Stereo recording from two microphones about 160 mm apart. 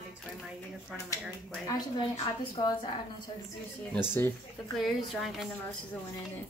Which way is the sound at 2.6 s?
35° left (ahead or behind).